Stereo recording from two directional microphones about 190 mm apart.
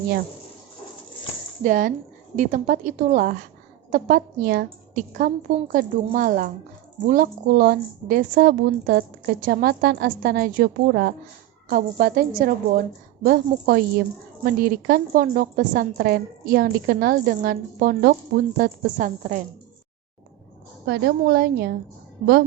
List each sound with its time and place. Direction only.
1.6 s a woman's voice: 40° right (ahead or behind)
20.8 s a woman's voice: 60° right (ahead or behind)